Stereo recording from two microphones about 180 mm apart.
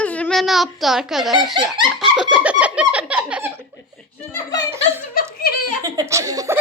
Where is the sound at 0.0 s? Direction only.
10° left (ahead or behind).